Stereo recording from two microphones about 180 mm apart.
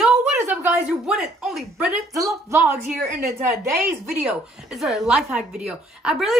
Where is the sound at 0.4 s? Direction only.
10° right (ahead or behind).